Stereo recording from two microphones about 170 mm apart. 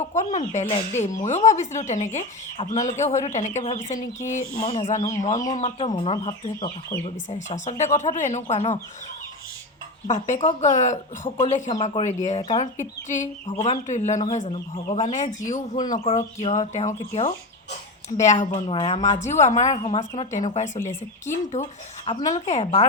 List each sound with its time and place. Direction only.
0.0 s speech: 45° left (ahead or behind)
5.9 s speech: 35° left (ahead or behind)
7.3 s speech: 45° left (ahead or behind)
10.1 s speech: 45° left (ahead or behind)